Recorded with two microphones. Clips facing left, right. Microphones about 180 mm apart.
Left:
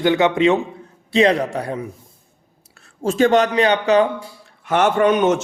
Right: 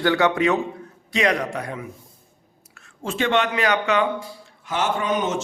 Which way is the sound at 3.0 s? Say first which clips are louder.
Left 7 dB; 40° left (ahead or behind).